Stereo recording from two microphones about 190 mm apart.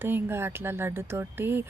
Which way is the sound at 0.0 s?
10° right (ahead or behind).